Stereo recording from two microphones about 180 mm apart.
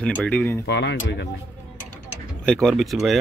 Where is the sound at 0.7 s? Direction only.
75° left (ahead or behind).